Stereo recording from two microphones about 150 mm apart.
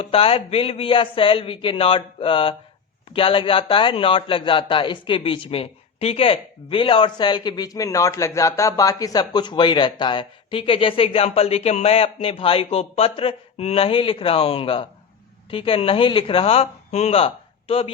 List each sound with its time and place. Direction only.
0.0 s a man's voice: 40° left (ahead or behind)